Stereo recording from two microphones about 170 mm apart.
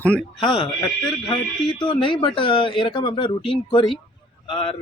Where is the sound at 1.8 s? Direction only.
30° left (ahead or behind).